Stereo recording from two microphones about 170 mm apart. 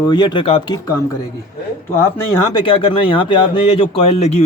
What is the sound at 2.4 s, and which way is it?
Speech, 25° left (ahead or behind).